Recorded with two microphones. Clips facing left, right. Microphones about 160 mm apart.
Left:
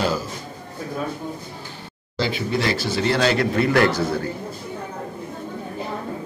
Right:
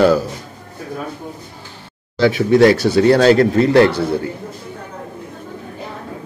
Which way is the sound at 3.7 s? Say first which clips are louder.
Right 6 dB; 30° right (ahead or behind).